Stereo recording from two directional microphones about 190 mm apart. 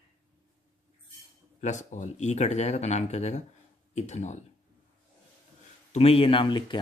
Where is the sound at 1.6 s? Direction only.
40° left (ahead or behind).